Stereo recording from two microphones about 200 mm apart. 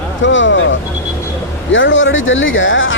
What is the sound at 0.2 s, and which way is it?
Speech, 70° left (ahead or behind).